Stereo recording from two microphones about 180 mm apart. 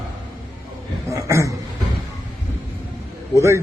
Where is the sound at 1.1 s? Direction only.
15° right (ahead or behind).